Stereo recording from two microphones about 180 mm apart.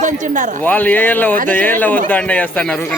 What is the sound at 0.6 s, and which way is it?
A man's voice, 10° left (ahead or behind).